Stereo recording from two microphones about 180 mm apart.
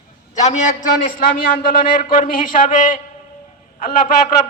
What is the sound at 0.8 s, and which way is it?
A man's voice, 50° left (ahead or behind).